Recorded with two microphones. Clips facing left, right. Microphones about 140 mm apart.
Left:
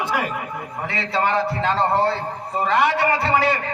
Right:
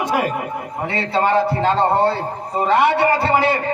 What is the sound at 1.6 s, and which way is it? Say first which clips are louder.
A man's voice: right 3 dB; 25° right (ahead or behind).